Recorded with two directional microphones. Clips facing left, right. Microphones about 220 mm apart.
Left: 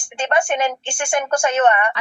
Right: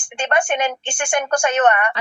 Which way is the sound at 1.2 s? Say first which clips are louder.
Even; 10° left (ahead or behind).